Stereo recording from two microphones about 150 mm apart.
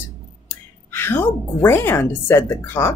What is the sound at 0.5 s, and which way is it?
A woman's voice, 15° left (ahead or behind).